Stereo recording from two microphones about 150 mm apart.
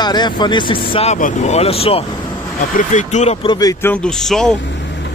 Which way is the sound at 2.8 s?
55° left (ahead or behind).